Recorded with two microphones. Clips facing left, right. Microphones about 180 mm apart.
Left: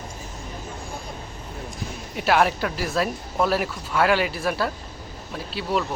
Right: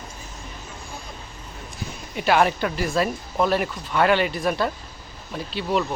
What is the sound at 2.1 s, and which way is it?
Speech, centre (ahead or behind).